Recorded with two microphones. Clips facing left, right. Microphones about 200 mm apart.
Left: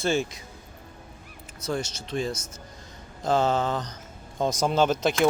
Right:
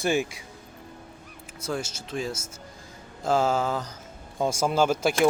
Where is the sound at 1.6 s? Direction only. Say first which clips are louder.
Left 1 dB; 5° right (ahead or behind).